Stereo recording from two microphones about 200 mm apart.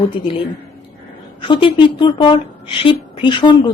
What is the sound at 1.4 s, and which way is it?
A woman's voice, 25° left (ahead or behind).